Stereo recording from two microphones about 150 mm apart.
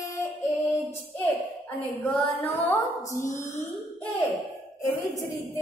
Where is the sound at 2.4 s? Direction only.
20° left (ahead or behind).